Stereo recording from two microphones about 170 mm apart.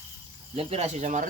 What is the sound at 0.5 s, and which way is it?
Speech, 40° right (ahead or behind).